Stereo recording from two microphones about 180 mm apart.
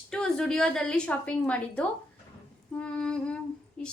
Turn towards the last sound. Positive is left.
turn(degrees=5)  # may be behind; listen again after turning